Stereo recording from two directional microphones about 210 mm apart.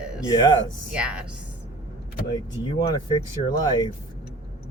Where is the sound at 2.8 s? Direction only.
20° left (ahead or behind).